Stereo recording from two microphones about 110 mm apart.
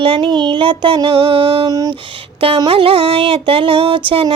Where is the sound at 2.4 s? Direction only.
55° right (ahead or behind).